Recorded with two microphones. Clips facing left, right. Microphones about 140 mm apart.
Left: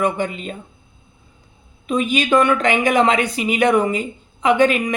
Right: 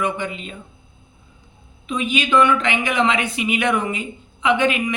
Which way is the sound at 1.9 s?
45° left (ahead or behind).